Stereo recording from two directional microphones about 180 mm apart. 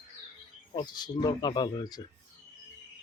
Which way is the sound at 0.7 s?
25° left (ahead or behind).